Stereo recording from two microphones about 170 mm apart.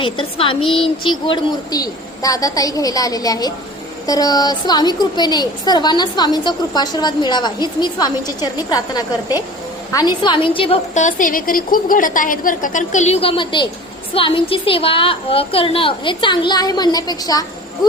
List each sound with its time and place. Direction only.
0.0 s a woman's voice: 30° left (ahead or behind)
10.9 s a woman's voice: 50° left (ahead or behind); by 17.4 s 20° left (ahead or behind)